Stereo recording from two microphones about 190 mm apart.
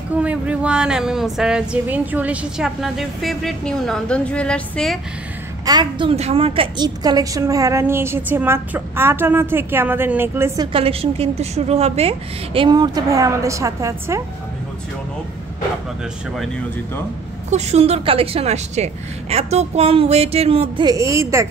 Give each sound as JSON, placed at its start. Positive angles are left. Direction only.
{"t": 0.1, "sound": "speech", "side_deg": -5}
{"t": 5.7, "sound": "a woman's voice", "side_deg": -25}
{"t": 10.7, "sound": "a woman's voice", "side_deg": -30}
{"t": 17.5, "sound": "a woman's voice", "side_deg": -35}